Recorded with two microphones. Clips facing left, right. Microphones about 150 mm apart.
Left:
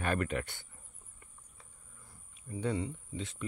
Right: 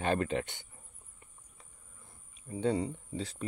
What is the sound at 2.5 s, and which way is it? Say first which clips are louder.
Speech: right 4 dB; 30° right (ahead or behind).